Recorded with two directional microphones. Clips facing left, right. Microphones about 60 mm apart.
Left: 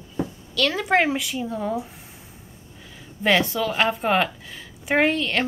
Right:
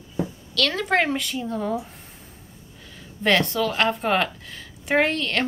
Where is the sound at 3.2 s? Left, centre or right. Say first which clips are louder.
Even; centre.